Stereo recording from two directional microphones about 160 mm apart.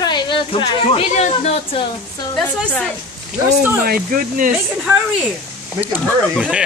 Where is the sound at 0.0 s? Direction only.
30° left (ahead or behind).